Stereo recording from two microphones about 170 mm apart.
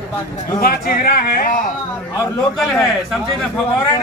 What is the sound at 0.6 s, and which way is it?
Speech, 60° left (ahead or behind).